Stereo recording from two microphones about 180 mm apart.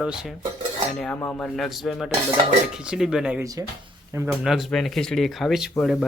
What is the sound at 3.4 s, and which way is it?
Speech, 20° right (ahead or behind).